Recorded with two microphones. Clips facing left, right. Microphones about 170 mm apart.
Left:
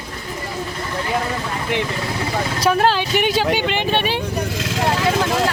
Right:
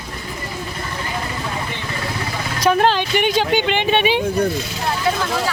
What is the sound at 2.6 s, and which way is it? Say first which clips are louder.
Speech: right 2 dB; 5° left (ahead or behind).